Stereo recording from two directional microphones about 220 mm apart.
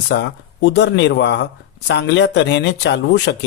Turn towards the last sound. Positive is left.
turn(degrees=50)  # may be behind; listen again after turning